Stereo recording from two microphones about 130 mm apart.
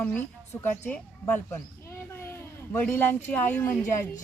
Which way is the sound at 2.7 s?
15° left (ahead or behind).